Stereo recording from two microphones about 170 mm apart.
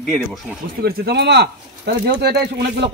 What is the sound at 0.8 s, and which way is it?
A man's voice, 70° right (ahead or behind).